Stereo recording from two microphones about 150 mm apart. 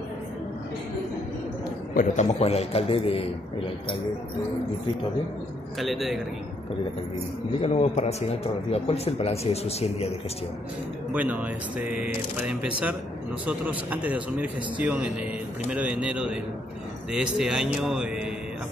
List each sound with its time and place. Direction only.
2.0 s a man's voice: 45° left (ahead or behind)
5.8 s a man's voice: centre (ahead or behind)
7.6 s a man's voice: 45° left (ahead or behind)
11.1 s a man's voice: 10° right (ahead or behind)